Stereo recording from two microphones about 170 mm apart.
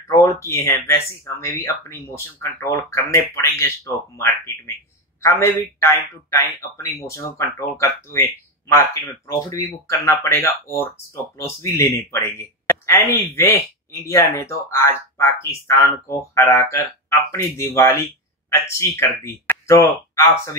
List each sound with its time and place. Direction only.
0.1 s speech: 15° left (ahead or behind)
9.3 s speech: 20° left (ahead or behind)